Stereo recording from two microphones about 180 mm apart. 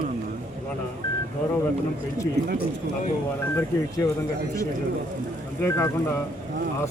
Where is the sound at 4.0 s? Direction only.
15° left (ahead or behind).